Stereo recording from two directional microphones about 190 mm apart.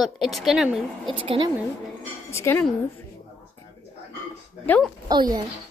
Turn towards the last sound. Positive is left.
turn(degrees=-25)  # may be behind; listen again after turning